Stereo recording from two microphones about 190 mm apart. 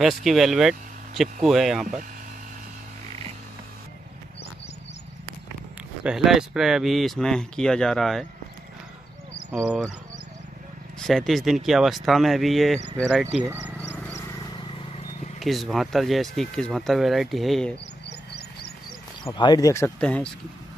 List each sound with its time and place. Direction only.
0.0 s speech: centre (ahead or behind)
6.0 s speech: centre (ahead or behind)
9.5 s speech: 10° right (ahead or behind)
11.0 s speech: centre (ahead or behind)
13.4 s speech: 15° right (ahead or behind)
13.7 s a sound: 10° left (ahead or behind)
15.3 s speech: centre (ahead or behind)
18.0 s a sound: 55° left (ahead or behind)
19.2 s speech: 25° left (ahead or behind); by 20.2 s 5° left (ahead or behind)